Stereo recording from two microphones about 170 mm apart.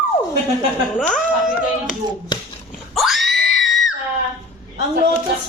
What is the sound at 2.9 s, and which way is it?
Screaming, centre (ahead or behind).